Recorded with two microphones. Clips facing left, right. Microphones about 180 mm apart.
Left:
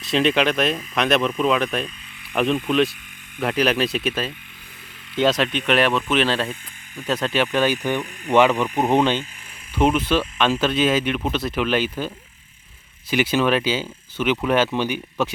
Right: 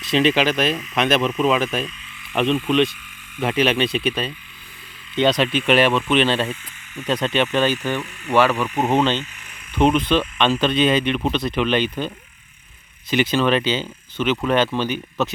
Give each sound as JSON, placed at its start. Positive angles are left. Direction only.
{"t": 0.0, "sound": "speech", "side_deg": 0}
{"t": 8.0, "sound": "speech", "side_deg": 35}
{"t": 8.4, "sound": "speech", "side_deg": 15}